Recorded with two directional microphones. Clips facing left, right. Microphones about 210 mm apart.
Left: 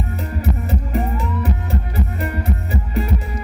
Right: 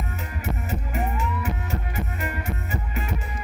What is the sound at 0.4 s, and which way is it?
Music, 35° left (ahead or behind).